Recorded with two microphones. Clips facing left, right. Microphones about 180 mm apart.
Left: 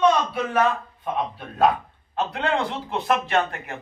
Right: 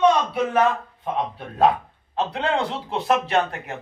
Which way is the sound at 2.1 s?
30° right (ahead or behind).